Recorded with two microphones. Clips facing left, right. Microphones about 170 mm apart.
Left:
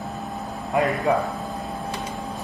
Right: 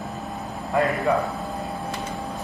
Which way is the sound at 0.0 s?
Centre (ahead or behind).